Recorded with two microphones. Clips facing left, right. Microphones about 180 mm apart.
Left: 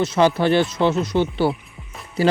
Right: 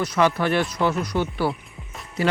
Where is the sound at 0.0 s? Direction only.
30° left (ahead or behind).